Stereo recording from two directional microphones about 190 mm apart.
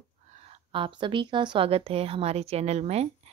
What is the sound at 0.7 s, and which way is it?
A woman's voice, 25° right (ahead or behind).